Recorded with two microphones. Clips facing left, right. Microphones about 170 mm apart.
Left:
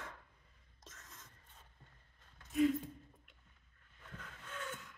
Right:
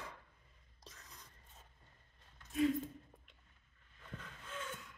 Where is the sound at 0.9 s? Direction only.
Centre (ahead or behind).